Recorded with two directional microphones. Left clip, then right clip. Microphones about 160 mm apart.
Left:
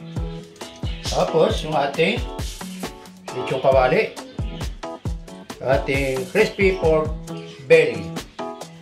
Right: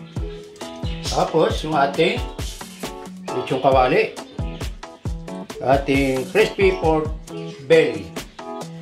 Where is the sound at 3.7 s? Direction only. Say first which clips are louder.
Even; 40° right (ahead or behind).